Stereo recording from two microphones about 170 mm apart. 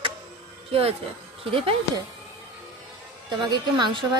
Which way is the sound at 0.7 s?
35° right (ahead or behind).